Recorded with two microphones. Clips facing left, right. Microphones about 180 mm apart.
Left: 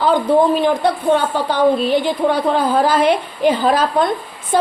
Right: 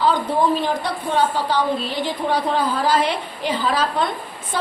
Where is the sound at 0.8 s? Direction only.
55° left (ahead or behind).